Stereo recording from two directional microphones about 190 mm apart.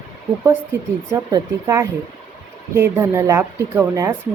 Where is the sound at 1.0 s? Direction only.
15° right (ahead or behind).